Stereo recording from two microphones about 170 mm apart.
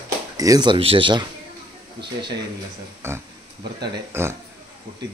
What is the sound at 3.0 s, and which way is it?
A man's voice, 15° right (ahead or behind).